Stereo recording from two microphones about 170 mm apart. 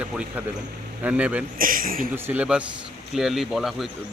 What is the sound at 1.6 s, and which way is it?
Speech, 55° right (ahead or behind).